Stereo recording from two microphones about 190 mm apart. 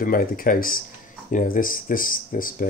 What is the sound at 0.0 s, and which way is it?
Speech, 50° left (ahead or behind).